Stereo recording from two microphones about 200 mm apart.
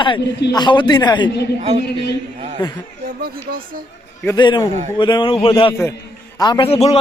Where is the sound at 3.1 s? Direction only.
45° right (ahead or behind).